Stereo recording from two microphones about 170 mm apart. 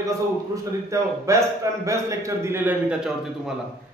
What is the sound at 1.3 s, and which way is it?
Speech, 15° right (ahead or behind).